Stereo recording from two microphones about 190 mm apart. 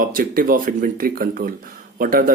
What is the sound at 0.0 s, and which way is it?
Speech, 45° right (ahead or behind).